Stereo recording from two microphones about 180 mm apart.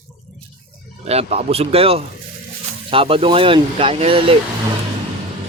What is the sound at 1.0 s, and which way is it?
Speech, 35° right (ahead or behind).